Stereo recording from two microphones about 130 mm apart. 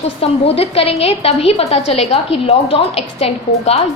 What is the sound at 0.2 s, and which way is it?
A woman's voice, 50° left (ahead or behind).